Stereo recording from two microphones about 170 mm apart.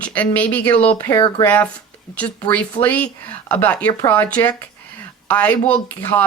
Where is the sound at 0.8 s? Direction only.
30° left (ahead or behind).